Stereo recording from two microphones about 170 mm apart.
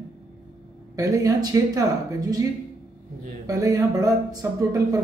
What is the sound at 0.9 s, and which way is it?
Speech, 20° right (ahead or behind).